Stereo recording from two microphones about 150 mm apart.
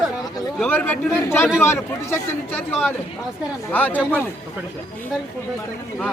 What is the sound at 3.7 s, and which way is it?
Speech, 10° left (ahead or behind).